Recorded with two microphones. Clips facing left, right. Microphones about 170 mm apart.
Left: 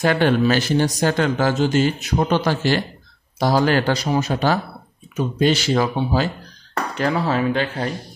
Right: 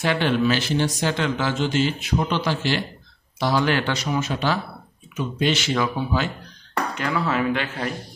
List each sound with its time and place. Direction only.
0.0 s speech: 45° left (ahead or behind)